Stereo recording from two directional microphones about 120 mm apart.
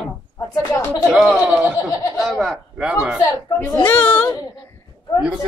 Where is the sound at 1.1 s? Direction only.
5° right (ahead or behind).